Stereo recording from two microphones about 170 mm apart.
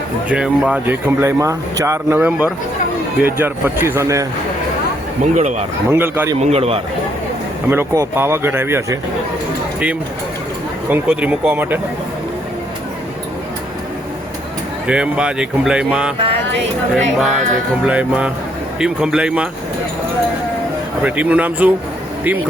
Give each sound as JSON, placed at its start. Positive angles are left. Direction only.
{"t": 0.3, "sound": "speech", "side_deg": -5}
{"t": 5.2, "sound": "speech", "side_deg": -45}
{"t": 5.9, "sound": "speech", "side_deg": -15}
{"t": 6.4, "sound": "a man's voice", "side_deg": -35}
{"t": 7.7, "sound": "speech", "side_deg": -10}
{"t": 10.8, "sound": "speech", "side_deg": -10}
{"t": 14.8, "sound": "speech", "side_deg": -5}
{"t": 21.0, "sound": "speech", "side_deg": -10}